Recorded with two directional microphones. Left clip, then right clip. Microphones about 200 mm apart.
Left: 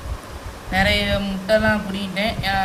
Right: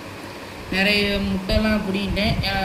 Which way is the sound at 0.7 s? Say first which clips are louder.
Left 1 dB; 50° left (ahead or behind).